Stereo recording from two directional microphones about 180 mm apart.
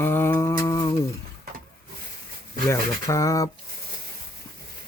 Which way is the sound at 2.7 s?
15° left (ahead or behind).